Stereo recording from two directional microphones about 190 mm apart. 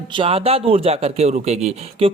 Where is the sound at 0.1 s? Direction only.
30° right (ahead or behind).